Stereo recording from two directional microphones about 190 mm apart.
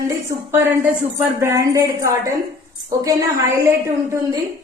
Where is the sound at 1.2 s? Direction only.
15° right (ahead or behind).